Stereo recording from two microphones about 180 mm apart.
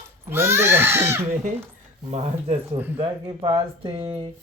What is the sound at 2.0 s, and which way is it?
Speech, 35° right (ahead or behind).